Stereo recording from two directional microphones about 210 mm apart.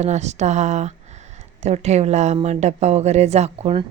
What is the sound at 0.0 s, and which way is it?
Speech, 30° right (ahead or behind).